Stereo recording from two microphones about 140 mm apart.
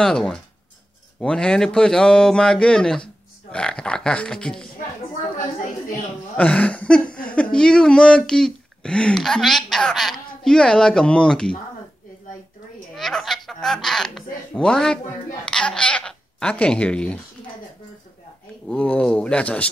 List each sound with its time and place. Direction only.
0.0 s speech: 5° left (ahead or behind)
6.3 s speech: 10° left (ahead or behind)
12.9 s speech: centre (ahead or behind)
18.7 s speech: 10° left (ahead or behind)